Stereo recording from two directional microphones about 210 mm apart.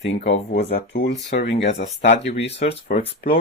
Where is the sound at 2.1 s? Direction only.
30° left (ahead or behind).